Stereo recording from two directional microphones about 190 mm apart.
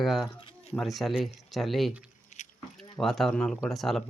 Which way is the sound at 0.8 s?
Centre (ahead or behind).